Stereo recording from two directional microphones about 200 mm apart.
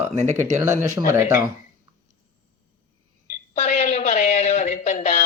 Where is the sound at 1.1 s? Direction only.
15° right (ahead or behind).